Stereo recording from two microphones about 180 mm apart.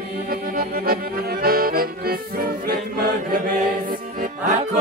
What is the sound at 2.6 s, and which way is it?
Chant, 55° right (ahead or behind).